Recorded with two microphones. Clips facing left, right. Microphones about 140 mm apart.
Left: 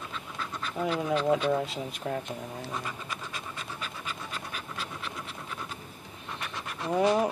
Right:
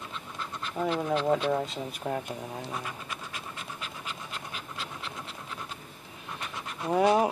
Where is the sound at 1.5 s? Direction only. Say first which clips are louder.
Even; 5° left (ahead or behind).